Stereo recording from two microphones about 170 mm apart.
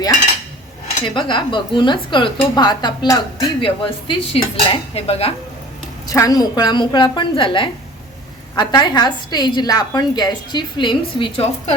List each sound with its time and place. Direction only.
1.0 s a woman's voice: 30° left (ahead or behind)
6.1 s a woman's voice: 20° left (ahead or behind)